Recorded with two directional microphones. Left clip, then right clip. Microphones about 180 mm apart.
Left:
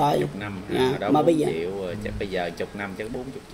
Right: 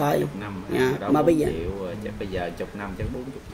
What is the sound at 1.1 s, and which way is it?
Speech, 10° right (ahead or behind).